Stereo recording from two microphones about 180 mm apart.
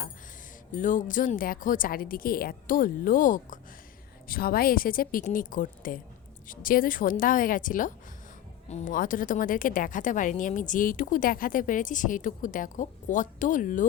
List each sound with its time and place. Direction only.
0.8 s speech: 45° left (ahead or behind)